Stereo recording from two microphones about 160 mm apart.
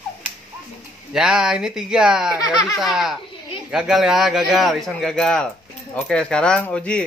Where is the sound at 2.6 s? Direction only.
Centre (ahead or behind).